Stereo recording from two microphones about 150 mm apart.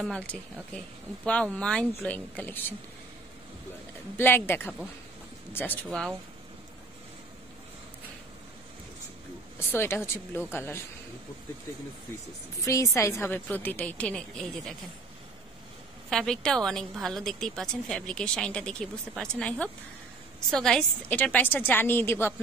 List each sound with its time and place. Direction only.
0.0 s a woman's voice: 5° left (ahead or behind)
4.2 s a woman's voice: 15° left (ahead or behind)
5.9 s a woman's voice: centre (ahead or behind)
9.6 s a woman's voice: 15° left (ahead or behind)
12.6 s a woman's voice: 20° left (ahead or behind); by 14.8 s 5° left (ahead or behind)
16.1 s a woman's voice: 5° left (ahead or behind)